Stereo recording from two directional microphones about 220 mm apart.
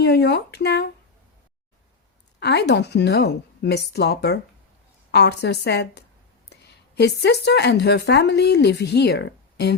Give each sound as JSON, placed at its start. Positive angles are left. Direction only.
{"t": 0.0, "sound": "speech", "side_deg": 50}
{"t": 2.4, "sound": "speech", "side_deg": 50}